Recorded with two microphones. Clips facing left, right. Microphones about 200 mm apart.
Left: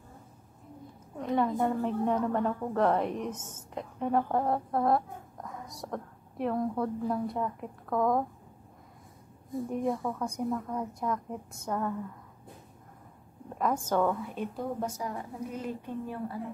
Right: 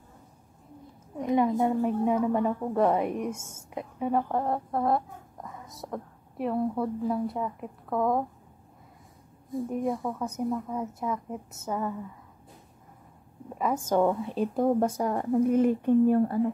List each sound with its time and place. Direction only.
1.1 s a woman's voice: 15° right (ahead or behind)
9.7 s a woman's voice: 5° right (ahead or behind)
13.6 s a woman's voice: 5° right (ahead or behind)
14.0 s a woman's voice: 25° right (ahead or behind)
14.4 s a woman's voice: 50° right (ahead or behind)